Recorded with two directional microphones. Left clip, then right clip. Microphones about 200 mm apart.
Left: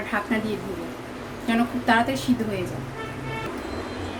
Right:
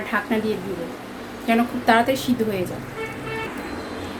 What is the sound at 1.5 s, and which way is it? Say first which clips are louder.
Speech: right 4 dB; 25° right (ahead or behind).